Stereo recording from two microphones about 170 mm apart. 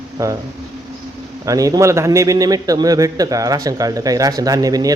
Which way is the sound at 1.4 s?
20° right (ahead or behind).